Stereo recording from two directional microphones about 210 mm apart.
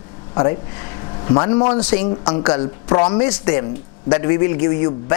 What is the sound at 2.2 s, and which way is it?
Speech, 25° left (ahead or behind).